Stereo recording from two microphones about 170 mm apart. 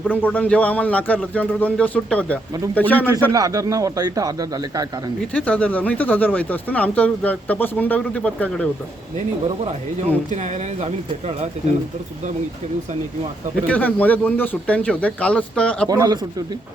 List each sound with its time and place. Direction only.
0.1 s speech: 10° left (ahead or behind)
3.3 s speech: 20° right (ahead or behind)
5.3 s speech: 5° left (ahead or behind)
10.3 s speech: 45° right (ahead or behind)
13.7 s speech: 10° left (ahead or behind)
15.9 s speech: 20° right (ahead or behind)